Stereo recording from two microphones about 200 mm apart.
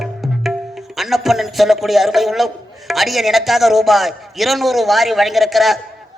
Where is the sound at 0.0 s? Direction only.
Centre (ahead or behind).